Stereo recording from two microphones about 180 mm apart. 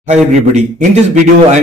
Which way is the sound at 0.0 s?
40° right (ahead or behind).